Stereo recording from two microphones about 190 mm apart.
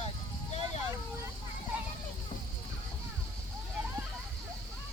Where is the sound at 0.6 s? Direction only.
20° right (ahead or behind).